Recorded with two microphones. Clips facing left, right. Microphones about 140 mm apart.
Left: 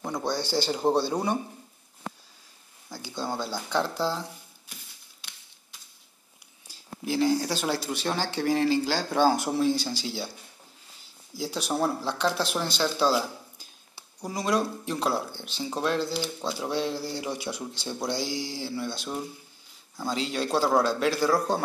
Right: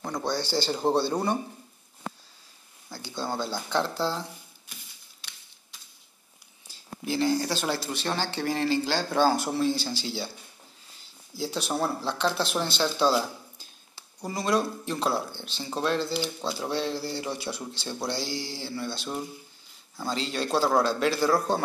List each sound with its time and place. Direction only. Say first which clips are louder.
0.0 s speech: even; 10° left (ahead or behind)
2.9 s speech: even; 10° left (ahead or behind)
7.1 s speech: left 1 dB; 5° left (ahead or behind)
11.3 s speech: even; 10° left (ahead or behind)
14.9 s speech: even; 5° left (ahead or behind)
16.7 s speech: left 1 dB; 10° left (ahead or behind)
18.6 s speech: left 1 dB; 5° left (ahead or behind)